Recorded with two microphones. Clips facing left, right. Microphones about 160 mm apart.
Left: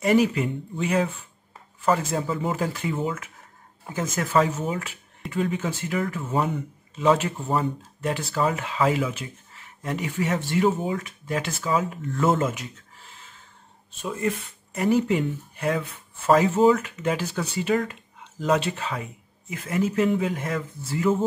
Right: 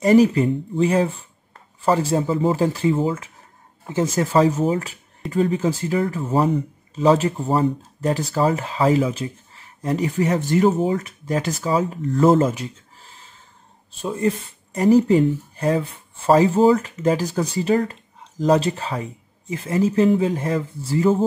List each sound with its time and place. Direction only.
0.0 s speech: 35° right (ahead or behind)